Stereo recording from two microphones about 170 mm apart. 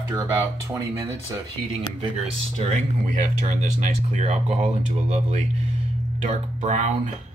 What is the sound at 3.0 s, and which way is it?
Speech, 45° right (ahead or behind).